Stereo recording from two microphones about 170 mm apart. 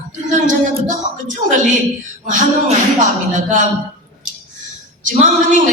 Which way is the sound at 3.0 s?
45° right (ahead or behind).